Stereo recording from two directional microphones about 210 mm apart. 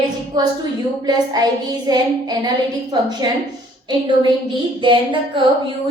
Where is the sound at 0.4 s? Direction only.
20° right (ahead or behind).